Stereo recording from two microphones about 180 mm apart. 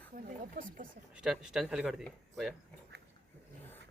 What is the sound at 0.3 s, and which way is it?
Speech, 50° right (ahead or behind).